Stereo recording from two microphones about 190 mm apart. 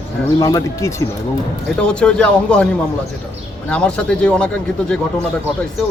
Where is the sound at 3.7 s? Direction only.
5° left (ahead or behind).